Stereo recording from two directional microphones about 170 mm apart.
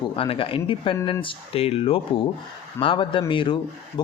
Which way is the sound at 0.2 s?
30° left (ahead or behind).